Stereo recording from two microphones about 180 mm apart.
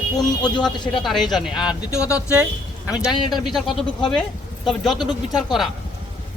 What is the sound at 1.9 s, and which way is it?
Speech, 15° left (ahead or behind).